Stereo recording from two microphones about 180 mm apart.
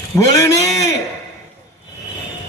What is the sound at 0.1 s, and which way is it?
Speech, 15° left (ahead or behind).